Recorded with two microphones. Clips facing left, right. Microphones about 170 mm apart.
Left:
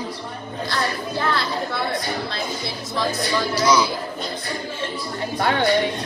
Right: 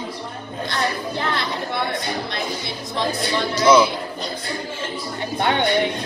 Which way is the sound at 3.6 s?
25° right (ahead or behind).